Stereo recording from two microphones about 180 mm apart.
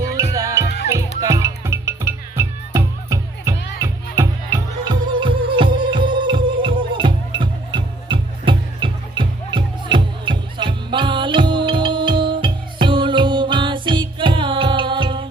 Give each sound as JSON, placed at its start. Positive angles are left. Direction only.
{"t": 0.2, "sound": "music", "side_deg": -20}